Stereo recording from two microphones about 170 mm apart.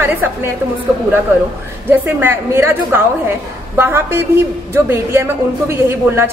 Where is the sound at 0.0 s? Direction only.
10° right (ahead or behind).